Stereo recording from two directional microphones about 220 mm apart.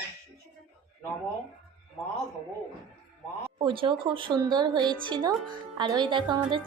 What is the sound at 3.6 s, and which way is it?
Music, 20° right (ahead or behind).